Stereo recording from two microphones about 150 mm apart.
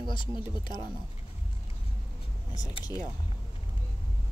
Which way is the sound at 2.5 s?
25° left (ahead or behind).